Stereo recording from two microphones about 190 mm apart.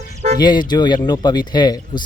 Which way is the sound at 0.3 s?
20° left (ahead or behind).